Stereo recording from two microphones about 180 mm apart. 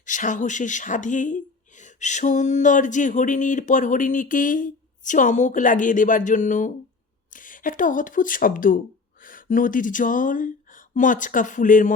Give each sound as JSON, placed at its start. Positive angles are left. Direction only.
{"t": 0.0, "sound": "speech", "side_deg": 45}